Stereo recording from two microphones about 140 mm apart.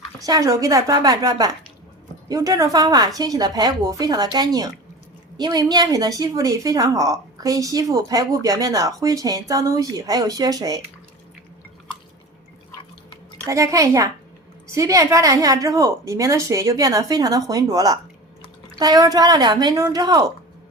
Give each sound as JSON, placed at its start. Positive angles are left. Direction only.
{"t": 0.2, "sound": "a woman's voice", "side_deg": -25}
{"t": 13.5, "sound": "a woman's voice", "side_deg": -25}